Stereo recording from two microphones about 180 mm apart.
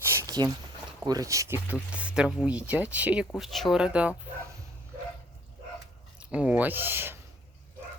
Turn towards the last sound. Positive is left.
turn(degrees=-10)  # may be behind; listen again after turning